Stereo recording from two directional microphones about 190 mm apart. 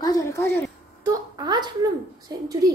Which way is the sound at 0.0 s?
20° left (ahead or behind).